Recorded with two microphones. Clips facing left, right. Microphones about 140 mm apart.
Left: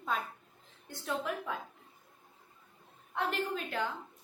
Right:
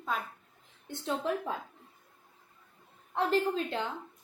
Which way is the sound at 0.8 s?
25° right (ahead or behind).